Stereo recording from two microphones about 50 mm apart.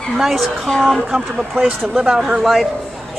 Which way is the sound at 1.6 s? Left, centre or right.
Centre.